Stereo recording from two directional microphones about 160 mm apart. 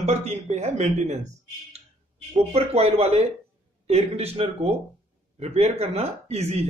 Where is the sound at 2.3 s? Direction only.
40° right (ahead or behind).